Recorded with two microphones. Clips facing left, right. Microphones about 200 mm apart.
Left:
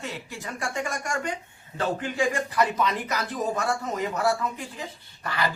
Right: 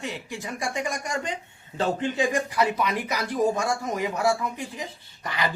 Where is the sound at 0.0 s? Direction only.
15° right (ahead or behind).